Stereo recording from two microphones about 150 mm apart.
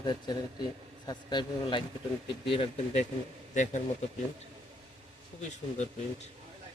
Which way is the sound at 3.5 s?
55° left (ahead or behind).